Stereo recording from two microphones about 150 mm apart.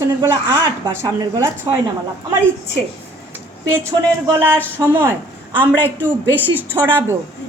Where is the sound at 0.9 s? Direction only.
25° right (ahead or behind).